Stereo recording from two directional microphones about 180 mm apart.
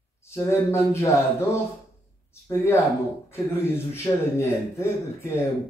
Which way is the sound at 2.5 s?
15° left (ahead or behind).